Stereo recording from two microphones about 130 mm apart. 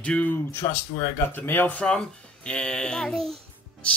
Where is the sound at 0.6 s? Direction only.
25° left (ahead or behind); by 3.3 s 5° left (ahead or behind).